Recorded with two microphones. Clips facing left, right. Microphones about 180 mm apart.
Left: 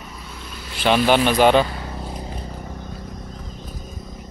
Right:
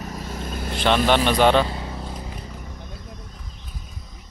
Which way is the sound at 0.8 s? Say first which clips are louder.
Left 2 dB; 5° left (ahead or behind).